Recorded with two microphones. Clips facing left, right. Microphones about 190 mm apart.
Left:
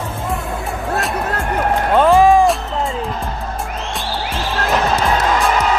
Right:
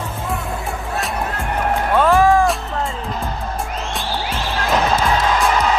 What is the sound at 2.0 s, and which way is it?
Music, 15° left (ahead or behind).